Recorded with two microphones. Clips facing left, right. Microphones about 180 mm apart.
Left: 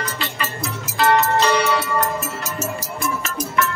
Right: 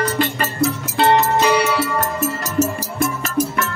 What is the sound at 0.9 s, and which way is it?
Music, 25° right (ahead or behind).